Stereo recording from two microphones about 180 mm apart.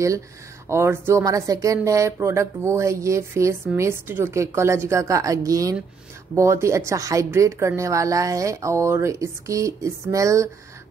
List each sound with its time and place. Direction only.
0.7 s speech: 15° right (ahead or behind)